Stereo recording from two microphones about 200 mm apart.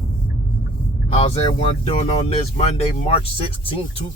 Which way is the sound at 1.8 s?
30° left (ahead or behind).